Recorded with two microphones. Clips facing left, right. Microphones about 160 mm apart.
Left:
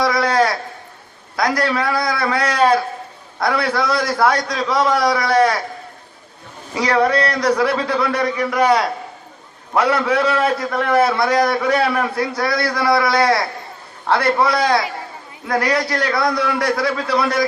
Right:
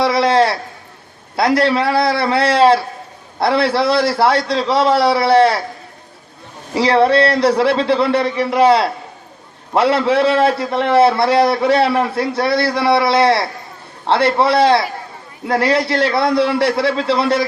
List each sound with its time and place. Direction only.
0.0 s a sound: 25° right (ahead or behind)
1.4 s a man's voice: 25° right (ahead or behind)
6.7 s a man's voice: 30° right (ahead or behind)